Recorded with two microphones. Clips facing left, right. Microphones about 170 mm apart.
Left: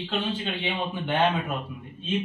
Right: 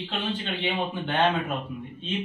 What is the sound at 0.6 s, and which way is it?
Speech, 10° left (ahead or behind).